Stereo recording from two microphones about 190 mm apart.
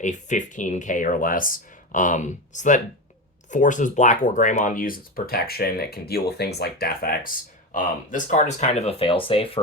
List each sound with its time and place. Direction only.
0.0 s speech: 40° left (ahead or behind)